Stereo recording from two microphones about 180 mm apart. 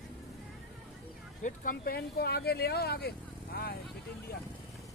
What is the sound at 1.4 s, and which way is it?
Speech, 45° left (ahead or behind).